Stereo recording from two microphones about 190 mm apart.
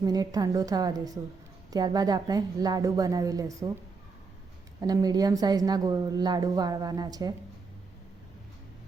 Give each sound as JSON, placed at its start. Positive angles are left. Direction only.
{"t": 0.0, "sound": "a woman's voice", "side_deg": -20}
{"t": 4.8, "sound": "a woman's voice", "side_deg": -20}